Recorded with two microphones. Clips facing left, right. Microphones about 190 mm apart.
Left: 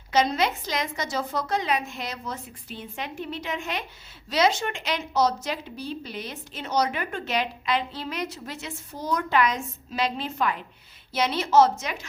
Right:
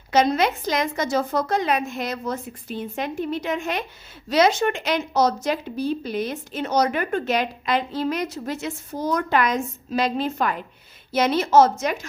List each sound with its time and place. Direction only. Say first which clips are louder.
0.1 s a woman's voice: right 4 dB; 50° right (ahead or behind)